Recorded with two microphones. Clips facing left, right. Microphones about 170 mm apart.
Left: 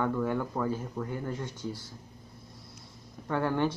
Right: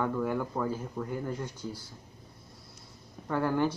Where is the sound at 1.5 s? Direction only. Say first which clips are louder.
Left 2 dB; 20° left (ahead or behind).